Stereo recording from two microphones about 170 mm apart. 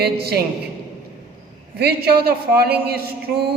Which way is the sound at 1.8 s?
70° right (ahead or behind).